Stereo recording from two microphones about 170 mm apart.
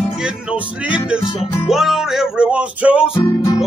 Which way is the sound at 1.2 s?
30° left (ahead or behind).